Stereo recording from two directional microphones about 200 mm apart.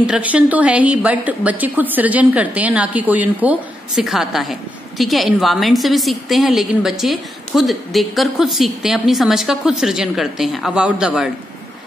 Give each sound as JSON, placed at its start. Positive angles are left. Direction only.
{"t": 0.0, "sound": "a woman's voice", "side_deg": -5}